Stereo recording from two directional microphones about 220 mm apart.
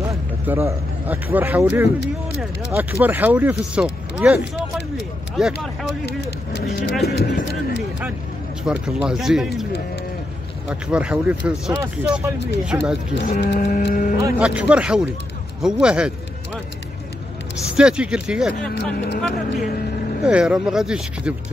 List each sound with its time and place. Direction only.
0.1 s speech: 10° right (ahead or behind)
3.0 s speech: 10° right (ahead or behind)
6.0 s speech: 50° left (ahead or behind)
8.6 s speech: 5° right (ahead or behind)
10.7 s speech: 5° right (ahead or behind)
13.2 s speech: 45° left (ahead or behind)
13.6 s livestock: 40° left (ahead or behind)
14.2 s speech: 5° right (ahead or behind)
17.7 s speech: 5° right (ahead or behind)
18.9 s speech: 50° left (ahead or behind)
20.2 s speech: 5° right (ahead or behind)